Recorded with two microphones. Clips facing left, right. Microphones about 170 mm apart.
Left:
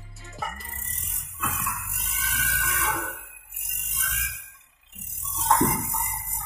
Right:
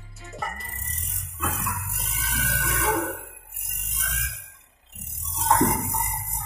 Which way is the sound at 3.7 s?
35° right (ahead or behind).